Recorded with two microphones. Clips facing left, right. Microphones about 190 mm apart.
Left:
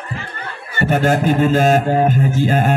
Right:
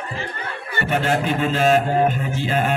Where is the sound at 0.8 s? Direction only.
45° left (ahead or behind).